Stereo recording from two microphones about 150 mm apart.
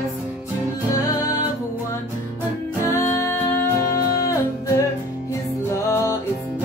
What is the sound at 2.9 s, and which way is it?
Music, 20° left (ahead or behind).